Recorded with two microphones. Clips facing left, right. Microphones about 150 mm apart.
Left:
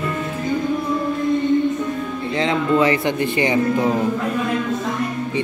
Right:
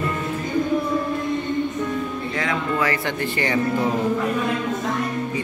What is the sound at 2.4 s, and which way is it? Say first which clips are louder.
Music: left 7 dB; 25° left (ahead or behind).